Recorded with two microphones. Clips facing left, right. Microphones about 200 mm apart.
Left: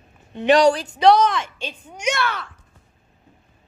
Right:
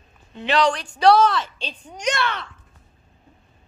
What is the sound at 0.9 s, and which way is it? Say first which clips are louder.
Speech: even; 20° left (ahead or behind).